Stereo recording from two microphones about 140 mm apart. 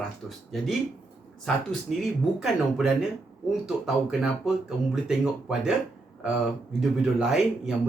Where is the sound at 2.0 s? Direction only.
Centre (ahead or behind).